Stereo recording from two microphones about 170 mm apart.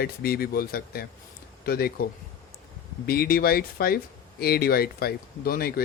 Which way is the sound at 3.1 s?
60° left (ahead or behind).